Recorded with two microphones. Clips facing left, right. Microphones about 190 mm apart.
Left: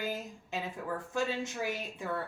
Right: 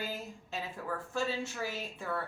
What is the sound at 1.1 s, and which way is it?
Speech, 15° left (ahead or behind).